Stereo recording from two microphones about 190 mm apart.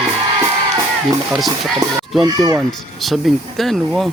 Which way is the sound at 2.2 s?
20° right (ahead or behind).